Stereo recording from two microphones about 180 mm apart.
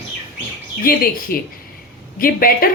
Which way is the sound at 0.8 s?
55° left (ahead or behind).